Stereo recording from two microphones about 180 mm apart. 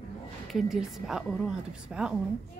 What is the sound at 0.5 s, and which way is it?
Speech, centre (ahead or behind).